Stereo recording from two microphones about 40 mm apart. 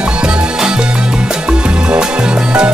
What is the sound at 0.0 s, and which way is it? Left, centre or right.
Music, right.